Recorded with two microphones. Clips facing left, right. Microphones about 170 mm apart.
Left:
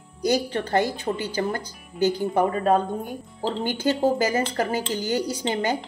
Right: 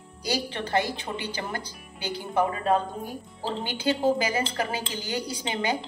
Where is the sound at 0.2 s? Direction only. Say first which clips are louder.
Left 7 dB; 45° left (ahead or behind).